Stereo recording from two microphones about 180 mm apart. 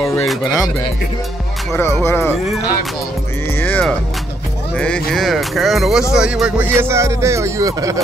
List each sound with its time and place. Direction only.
0.2 s speech: centre (ahead or behind)
1.7 s speech: 15° left (ahead or behind)
3.5 s music: 10° left (ahead or behind)
4.7 s speech: 5° left (ahead or behind); by 8.0 s 20° right (ahead or behind)